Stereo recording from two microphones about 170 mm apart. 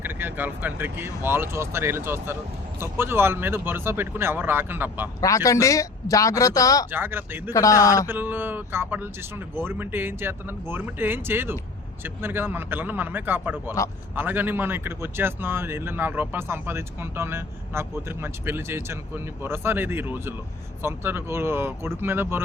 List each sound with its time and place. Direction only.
0.0 s speech: 10° right (ahead or behind)
5.2 s speech: 20° left (ahead or behind)
6.9 s speech: 10° right (ahead or behind)
7.5 s speech: 20° left (ahead or behind)
8.0 s speech: 10° right (ahead or behind)